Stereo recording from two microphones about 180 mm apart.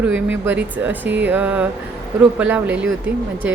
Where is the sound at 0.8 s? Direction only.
10° right (ahead or behind).